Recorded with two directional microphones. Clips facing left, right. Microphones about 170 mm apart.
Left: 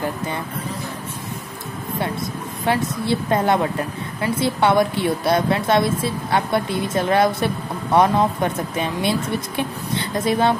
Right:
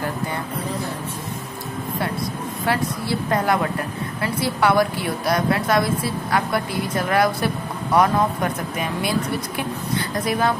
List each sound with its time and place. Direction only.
2.6 s a woman's voice: 20° left (ahead or behind)